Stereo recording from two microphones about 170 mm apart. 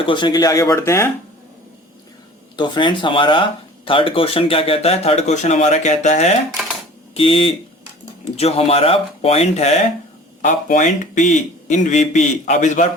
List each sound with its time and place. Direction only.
0.0 s speech: 30° left (ahead or behind)
2.6 s speech: 25° left (ahead or behind); by 12.9 s 45° left (ahead or behind)